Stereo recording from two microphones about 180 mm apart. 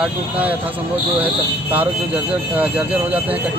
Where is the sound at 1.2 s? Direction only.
10° right (ahead or behind).